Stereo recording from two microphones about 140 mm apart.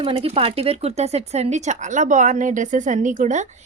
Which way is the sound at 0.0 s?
40° right (ahead or behind).